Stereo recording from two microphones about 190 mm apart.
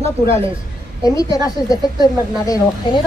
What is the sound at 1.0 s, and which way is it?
A woman's voice, 20° left (ahead or behind).